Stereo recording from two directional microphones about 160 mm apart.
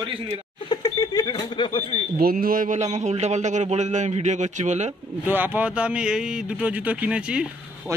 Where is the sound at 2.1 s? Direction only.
65° right (ahead or behind); by 4.9 s 45° right (ahead or behind).